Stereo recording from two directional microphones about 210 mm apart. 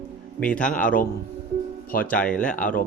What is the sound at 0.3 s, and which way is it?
Speech, 5° left (ahead or behind).